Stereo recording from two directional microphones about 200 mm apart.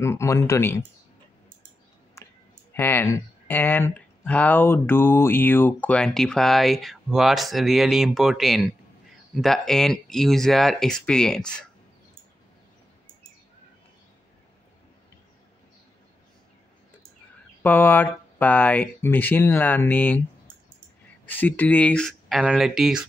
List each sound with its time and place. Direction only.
0.0 s speech: 15° left (ahead or behind)
2.2 s clicking: 15° left (ahead or behind)
2.7 s speech: 10° left (ahead or behind)
17.6 s speech: 10° left (ahead or behind)
21.3 s speech: 10° left (ahead or behind)